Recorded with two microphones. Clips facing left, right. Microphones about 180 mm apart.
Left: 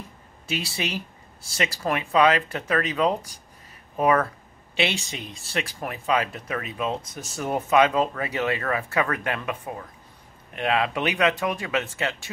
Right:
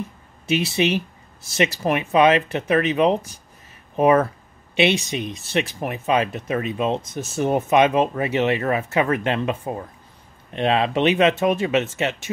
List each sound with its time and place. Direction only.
0.5 s speech: 20° right (ahead or behind)